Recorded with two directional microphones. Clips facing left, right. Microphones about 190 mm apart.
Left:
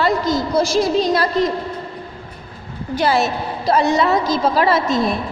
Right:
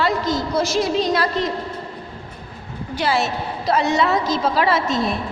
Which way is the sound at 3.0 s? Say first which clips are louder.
Left 3 dB; 45° left (ahead or behind).